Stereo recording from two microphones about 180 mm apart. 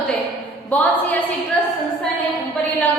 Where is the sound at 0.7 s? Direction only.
10° left (ahead or behind).